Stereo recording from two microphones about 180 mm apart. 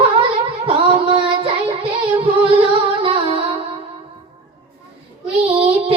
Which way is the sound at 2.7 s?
30° right (ahead or behind).